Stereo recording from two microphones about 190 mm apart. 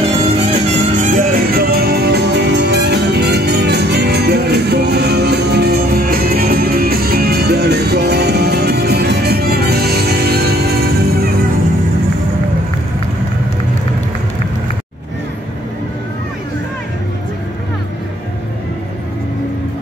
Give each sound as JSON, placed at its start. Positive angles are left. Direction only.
{"t": 0.1, "sound": "music", "side_deg": -35}